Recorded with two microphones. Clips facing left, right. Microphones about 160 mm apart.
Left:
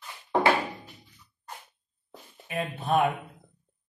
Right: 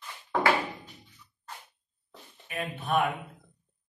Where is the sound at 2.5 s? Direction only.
30° left (ahead or behind).